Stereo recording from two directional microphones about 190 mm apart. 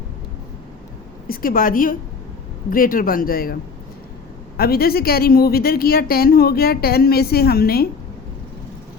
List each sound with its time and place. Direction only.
1.3 s a woman's voice: 50° left (ahead or behind)